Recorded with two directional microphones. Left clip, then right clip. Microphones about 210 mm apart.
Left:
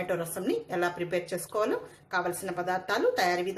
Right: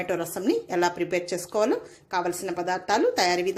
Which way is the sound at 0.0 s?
30° right (ahead or behind).